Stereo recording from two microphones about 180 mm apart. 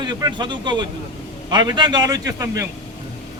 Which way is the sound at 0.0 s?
25° right (ahead or behind).